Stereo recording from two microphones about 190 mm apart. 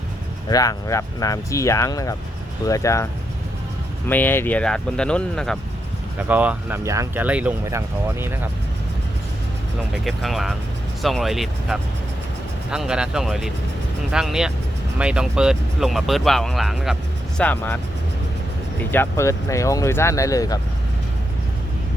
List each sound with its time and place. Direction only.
0.4 s speech: 20° left (ahead or behind)
4.1 s speech: 10° left (ahead or behind)
6.1 s speech: 10° right (ahead or behind)
9.9 s speech: centre (ahead or behind)
18.9 s speech: 15° left (ahead or behind)